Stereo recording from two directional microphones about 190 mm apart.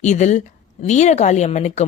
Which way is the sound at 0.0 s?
40° left (ahead or behind).